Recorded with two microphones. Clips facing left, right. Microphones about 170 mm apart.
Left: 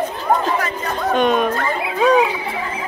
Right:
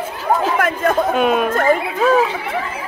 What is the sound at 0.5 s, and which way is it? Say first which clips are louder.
Speech: right 6 dB; 50° right (ahead or behind).